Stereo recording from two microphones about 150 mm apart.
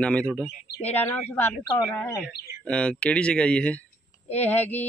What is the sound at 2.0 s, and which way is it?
Speech, 15° left (ahead or behind).